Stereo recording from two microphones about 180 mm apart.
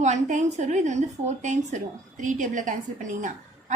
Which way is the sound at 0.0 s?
40° right (ahead or behind).